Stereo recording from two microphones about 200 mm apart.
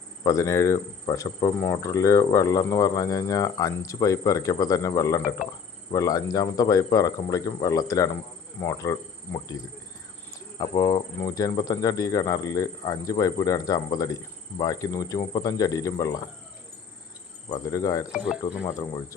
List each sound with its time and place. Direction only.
0.3 s speech: 15° left (ahead or behind)
10.3 s speech: 20° left (ahead or behind)
17.5 s speech: 15° left (ahead or behind)
18.1 s speech: centre (ahead or behind)
18.8 s speech: 20° left (ahead or behind)